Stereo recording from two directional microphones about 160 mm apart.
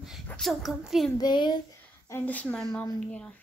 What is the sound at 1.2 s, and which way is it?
Speech, 25° left (ahead or behind).